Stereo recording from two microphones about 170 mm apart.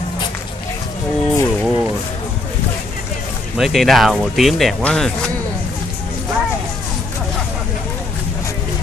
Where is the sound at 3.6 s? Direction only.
Centre (ahead or behind).